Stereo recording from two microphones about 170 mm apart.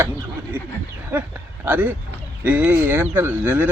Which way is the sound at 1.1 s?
10° right (ahead or behind).